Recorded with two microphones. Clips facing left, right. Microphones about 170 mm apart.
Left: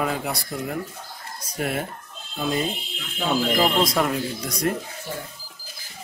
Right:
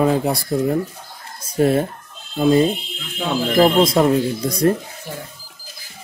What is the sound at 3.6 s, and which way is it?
Speech, 30° right (ahead or behind).